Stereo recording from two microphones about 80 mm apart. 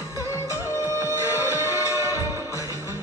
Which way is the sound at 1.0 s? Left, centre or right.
Left.